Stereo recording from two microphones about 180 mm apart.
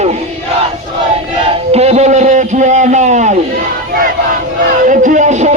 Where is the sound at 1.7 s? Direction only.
35° right (ahead or behind).